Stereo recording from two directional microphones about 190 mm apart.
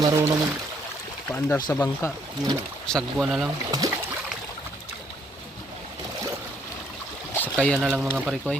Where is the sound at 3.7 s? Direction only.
20° right (ahead or behind).